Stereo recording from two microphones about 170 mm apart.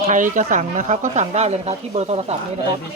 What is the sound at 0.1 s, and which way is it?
Speech, 50° right (ahead or behind).